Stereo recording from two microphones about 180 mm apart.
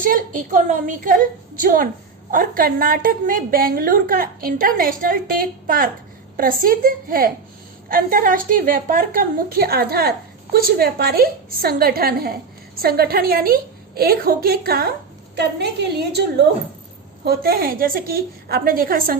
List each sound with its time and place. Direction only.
0.0 s a woman's voice: 50° right (ahead or behind)
15.5 s a woman's voice: 70° right (ahead or behind)
17.2 s a woman's voice: 55° right (ahead or behind)